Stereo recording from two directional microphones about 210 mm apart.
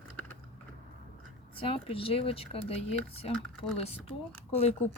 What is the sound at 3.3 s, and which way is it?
Speech, 5° left (ahead or behind).